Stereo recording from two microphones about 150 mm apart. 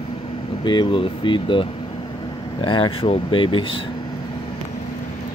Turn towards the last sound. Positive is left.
turn(degrees=35)  # may be behind; listen again after turning